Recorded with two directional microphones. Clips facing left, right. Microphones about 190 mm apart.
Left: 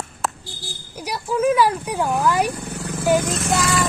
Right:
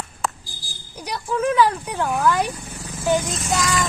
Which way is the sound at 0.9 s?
10° left (ahead or behind).